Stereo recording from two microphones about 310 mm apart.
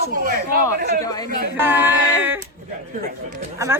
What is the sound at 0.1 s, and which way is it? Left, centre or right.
Speech, right.